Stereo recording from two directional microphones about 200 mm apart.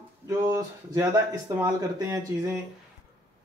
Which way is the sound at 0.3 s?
15° right (ahead or behind).